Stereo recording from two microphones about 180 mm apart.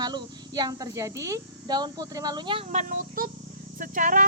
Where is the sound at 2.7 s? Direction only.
45° right (ahead or behind).